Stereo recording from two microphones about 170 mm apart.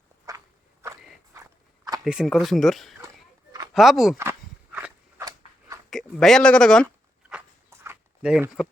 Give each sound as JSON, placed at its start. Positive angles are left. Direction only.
{"t": 0.3, "sound": "walk", "side_deg": -20}
{"t": 2.0, "sound": "speech", "side_deg": 0}
{"t": 4.2, "sound": "walk", "side_deg": -10}
{"t": 5.9, "sound": "speech", "side_deg": 5}
{"t": 7.3, "sound": "a sound", "side_deg": -10}